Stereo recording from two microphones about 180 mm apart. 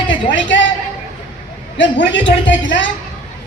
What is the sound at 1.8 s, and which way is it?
A woman's voice, 90° left.